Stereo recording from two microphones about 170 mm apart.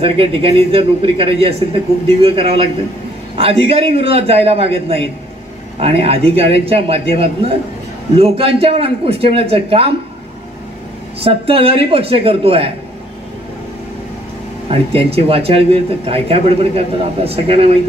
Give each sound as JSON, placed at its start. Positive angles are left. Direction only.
{"t": 0.0, "sound": "speech", "side_deg": -35}
{"t": 11.1, "sound": "speech", "side_deg": -35}
{"t": 14.7, "sound": "speech", "side_deg": -35}